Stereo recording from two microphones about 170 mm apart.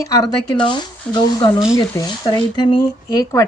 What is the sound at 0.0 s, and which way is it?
Speech, 20° left (ahead or behind).